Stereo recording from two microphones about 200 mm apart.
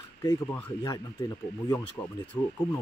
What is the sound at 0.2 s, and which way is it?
Speech, 20° left (ahead or behind).